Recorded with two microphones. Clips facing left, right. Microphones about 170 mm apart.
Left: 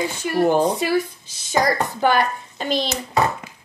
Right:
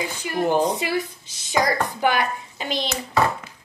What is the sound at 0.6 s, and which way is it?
A woman's voice, 15° right (ahead or behind).